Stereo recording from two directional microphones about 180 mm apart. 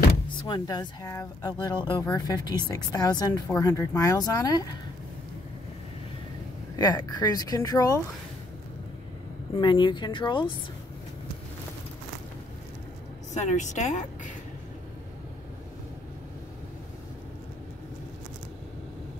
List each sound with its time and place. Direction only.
0.5 s speech: 20° left (ahead or behind)
6.8 s speech: 20° left (ahead or behind)
9.6 s speech: 25° left (ahead or behind)
13.3 s a woman's voice: 40° left (ahead or behind)